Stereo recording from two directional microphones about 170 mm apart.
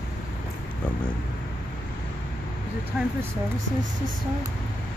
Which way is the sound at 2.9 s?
5° right (ahead or behind).